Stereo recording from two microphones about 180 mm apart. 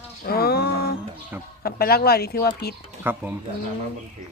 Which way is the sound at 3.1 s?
10° right (ahead or behind).